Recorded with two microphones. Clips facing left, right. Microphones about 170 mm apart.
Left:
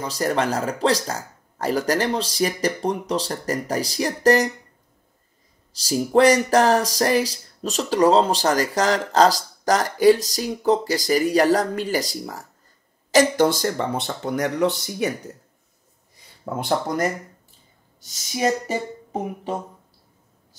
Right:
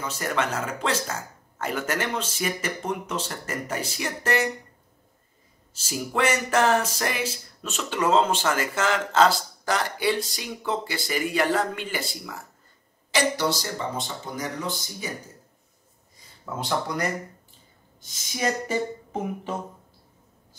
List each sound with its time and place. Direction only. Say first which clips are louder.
0.0 s speech: left 5 dB; 35° left (ahead or behind)
5.7 s speech: left 9 dB; 35° left (ahead or behind); by 15.3 s 65° left (ahead or behind)
16.5 s speech: left 5 dB; 50° left (ahead or behind)